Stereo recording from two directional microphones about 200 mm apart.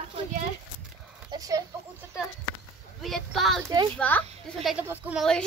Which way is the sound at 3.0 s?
Centre (ahead or behind).